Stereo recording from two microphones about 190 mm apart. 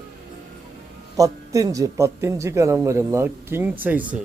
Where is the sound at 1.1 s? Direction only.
20° right (ahead or behind).